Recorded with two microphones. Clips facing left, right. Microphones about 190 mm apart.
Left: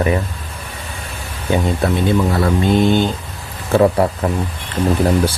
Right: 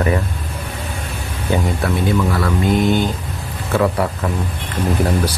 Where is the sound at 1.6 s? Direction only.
25° left (ahead or behind).